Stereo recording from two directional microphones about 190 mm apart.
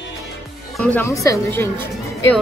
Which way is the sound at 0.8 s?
10° left (ahead or behind).